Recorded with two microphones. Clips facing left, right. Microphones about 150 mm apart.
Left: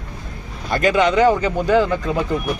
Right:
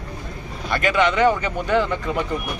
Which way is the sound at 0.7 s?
35° left (ahead or behind).